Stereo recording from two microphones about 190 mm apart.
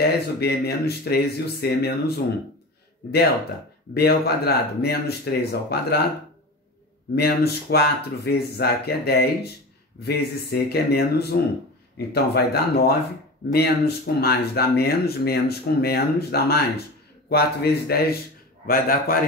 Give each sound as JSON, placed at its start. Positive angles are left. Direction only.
{"t": 0.0, "sound": "speech", "side_deg": 55}
{"t": 3.9, "sound": "speech", "side_deg": 55}
{"t": 7.2, "sound": "a man's voice", "side_deg": 55}